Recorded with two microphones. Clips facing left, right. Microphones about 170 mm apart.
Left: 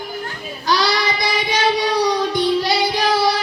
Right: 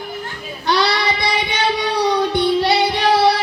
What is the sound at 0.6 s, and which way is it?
Child singing, 60° right (ahead or behind).